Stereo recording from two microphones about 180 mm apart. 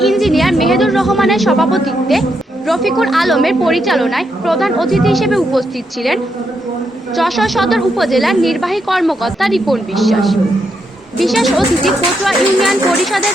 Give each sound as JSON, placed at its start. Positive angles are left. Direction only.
{"t": 0.0, "sound": "a woman's voice", "side_deg": 0}
{"t": 7.2, "sound": "a woman's voice", "side_deg": 0}